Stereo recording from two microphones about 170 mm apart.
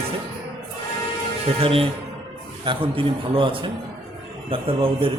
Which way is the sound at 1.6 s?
35° right (ahead or behind).